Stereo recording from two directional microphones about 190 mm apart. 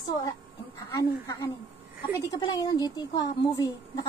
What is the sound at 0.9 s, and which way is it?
A woman's voice, 15° left (ahead or behind).